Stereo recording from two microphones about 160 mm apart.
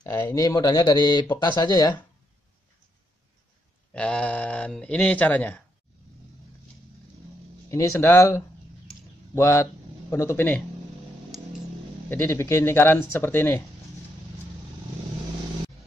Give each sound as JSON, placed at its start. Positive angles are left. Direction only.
{"t": 0.1, "sound": "speech", "side_deg": 15}
{"t": 3.9, "sound": "speech", "side_deg": 5}
{"t": 7.7, "sound": "speech", "side_deg": 20}
{"t": 12.1, "sound": "speech", "side_deg": 15}